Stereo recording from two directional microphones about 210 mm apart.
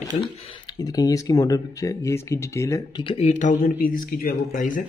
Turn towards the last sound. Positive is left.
turn(degrees=40)  # may be behind; listen again after turning